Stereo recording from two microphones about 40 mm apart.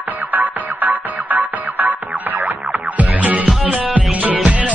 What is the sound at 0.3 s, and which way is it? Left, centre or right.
Music, right.